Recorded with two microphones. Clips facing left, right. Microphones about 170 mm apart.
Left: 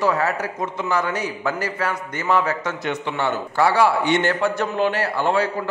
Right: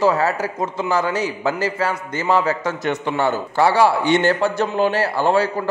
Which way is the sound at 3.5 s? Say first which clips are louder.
Right 2 dB; 30° right (ahead or behind).